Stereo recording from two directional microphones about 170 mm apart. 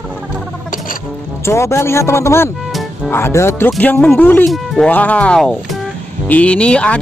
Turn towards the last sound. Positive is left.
turn(degrees=5)  # may be behind; listen again after turning